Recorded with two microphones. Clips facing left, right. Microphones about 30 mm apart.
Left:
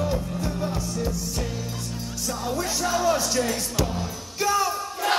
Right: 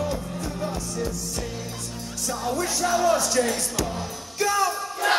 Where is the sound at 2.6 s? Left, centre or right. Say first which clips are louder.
Right 2 dB; centre.